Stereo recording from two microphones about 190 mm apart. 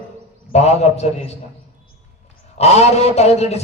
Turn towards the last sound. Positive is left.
turn(degrees=35)  # may be behind; listen again after turning